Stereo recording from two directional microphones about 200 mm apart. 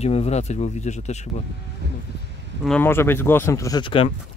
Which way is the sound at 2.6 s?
5° left (ahead or behind).